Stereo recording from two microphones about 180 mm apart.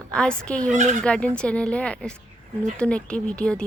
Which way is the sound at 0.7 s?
45° right (ahead or behind).